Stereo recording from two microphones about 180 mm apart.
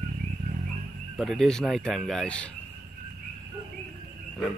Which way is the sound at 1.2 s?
Centre (ahead or behind).